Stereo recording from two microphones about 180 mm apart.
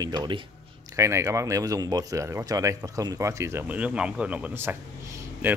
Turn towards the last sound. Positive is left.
turn(degrees=-10)  # may be behind; listen again after turning